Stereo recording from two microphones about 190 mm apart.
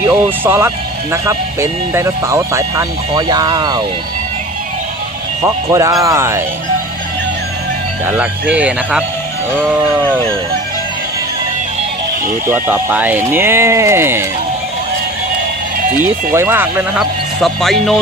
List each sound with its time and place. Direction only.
0.0 s speech: 15° right (ahead or behind)
5.4 s speech: 15° right (ahead or behind)
8.0 s speech: 5° right (ahead or behind)
10.0 s speech: 5° left (ahead or behind)
12.5 s speech: 10° right (ahead or behind)
16.0 s speech: 10° right (ahead or behind)